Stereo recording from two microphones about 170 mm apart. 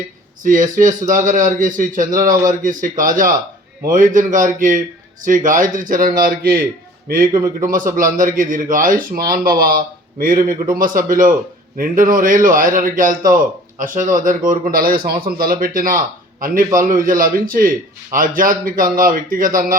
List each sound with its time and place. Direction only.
0.4 s a man's voice: 50° right (ahead or behind)
7.3 s a man's voice: 20° right (ahead or behind)
7.7 s a man's voice: 55° right (ahead or behind)